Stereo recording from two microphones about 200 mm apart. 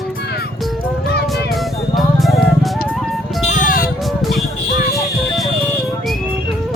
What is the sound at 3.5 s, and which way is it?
Music, 45° left (ahead or behind).